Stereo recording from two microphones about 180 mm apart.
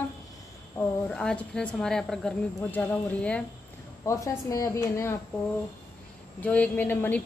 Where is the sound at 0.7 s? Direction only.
5° left (ahead or behind).